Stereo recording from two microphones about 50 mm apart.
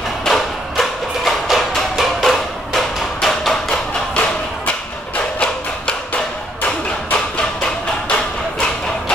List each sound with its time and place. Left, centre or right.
0.2 s music: centre
2.2 s a sound: centre
7.3 s music: left